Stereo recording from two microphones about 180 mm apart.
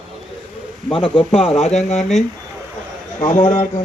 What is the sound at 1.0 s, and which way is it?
Speech, 30° left (ahead or behind).